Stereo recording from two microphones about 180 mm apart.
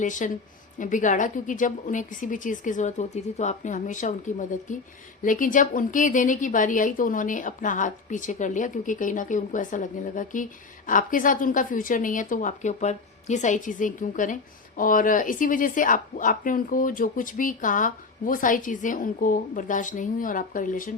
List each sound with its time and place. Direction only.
0.0 s a woman's voice: 45° left (ahead or behind)